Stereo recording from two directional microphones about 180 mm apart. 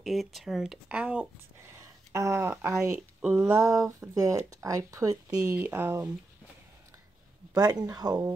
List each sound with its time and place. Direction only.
0.0 s speech: centre (ahead or behind)
7.5 s speech: 20° right (ahead or behind)